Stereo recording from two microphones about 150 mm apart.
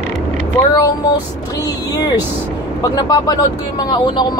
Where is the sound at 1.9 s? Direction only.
25° left (ahead or behind).